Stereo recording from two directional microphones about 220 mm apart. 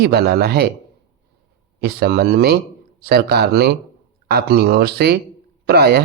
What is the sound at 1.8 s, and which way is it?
Speech, 45° right (ahead or behind).